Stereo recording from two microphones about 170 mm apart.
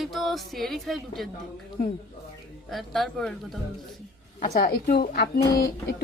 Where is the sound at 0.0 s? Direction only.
Centre (ahead or behind).